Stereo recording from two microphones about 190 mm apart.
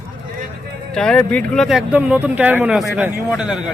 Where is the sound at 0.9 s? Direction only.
5° left (ahead or behind).